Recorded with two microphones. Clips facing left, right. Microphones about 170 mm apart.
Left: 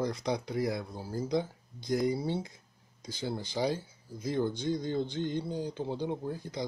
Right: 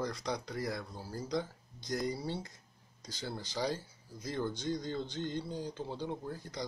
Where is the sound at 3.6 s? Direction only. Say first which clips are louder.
Left 4 dB; 20° left (ahead or behind).